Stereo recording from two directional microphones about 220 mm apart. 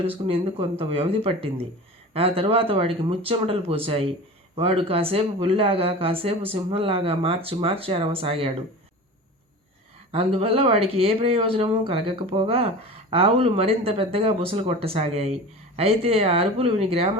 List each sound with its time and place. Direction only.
0.2 s speech: 20° right (ahead or behind)
10.1 s speech: 25° right (ahead or behind)